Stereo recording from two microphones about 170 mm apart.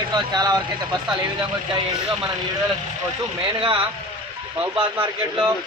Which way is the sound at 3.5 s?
30° right (ahead or behind).